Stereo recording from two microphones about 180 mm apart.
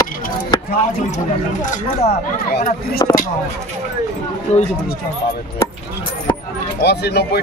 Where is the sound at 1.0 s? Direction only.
40° left (ahead or behind).